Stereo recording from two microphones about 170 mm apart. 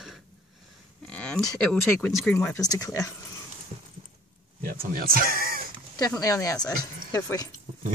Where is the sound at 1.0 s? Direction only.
5° left (ahead or behind); by 3.1 s 20° left (ahead or behind).